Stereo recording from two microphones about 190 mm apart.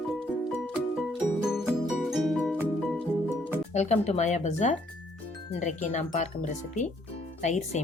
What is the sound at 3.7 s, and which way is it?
Speech, 35° left (ahead or behind).